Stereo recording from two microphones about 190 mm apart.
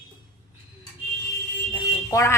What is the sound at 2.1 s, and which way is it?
Speech, 15° left (ahead or behind).